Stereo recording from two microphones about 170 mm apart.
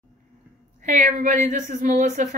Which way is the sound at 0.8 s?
45° right (ahead or behind).